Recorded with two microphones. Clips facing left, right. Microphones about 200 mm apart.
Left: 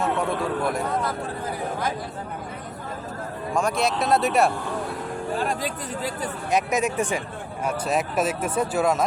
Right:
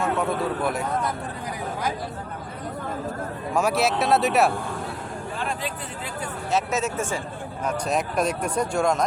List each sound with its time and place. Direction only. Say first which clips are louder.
0.0 s speech: even; centre (ahead or behind)
3.5 s speech: right 1 dB; 5° right (ahead or behind)
5.4 s speech: left 3 dB; 40° left (ahead or behind)
6.5 s speech: left 2 dB; 15° left (ahead or behind)
7.6 s speech: left 1 dB; 5° left (ahead or behind)